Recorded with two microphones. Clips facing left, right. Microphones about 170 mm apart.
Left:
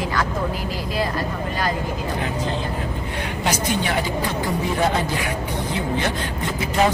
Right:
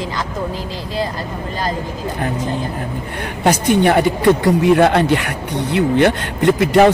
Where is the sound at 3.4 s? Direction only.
60° right (ahead or behind).